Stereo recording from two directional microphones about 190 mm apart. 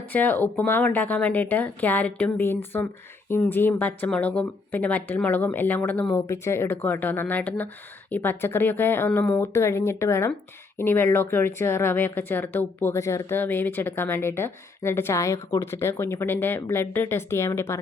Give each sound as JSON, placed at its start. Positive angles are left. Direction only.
{"t": 0.1, "sound": "speech", "side_deg": 10}